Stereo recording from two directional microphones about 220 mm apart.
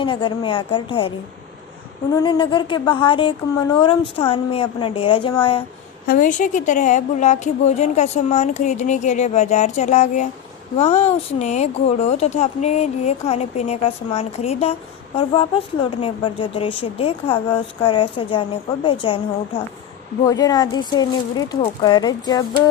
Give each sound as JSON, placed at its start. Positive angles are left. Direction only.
{"t": 0.0, "sound": "speech", "side_deg": 20}
{"t": 2.1, "sound": "speech", "side_deg": 20}
{"t": 6.1, "sound": "a woman's voice", "side_deg": 40}